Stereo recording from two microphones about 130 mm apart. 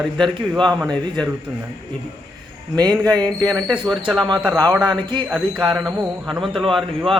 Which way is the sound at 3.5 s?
5° left (ahead or behind).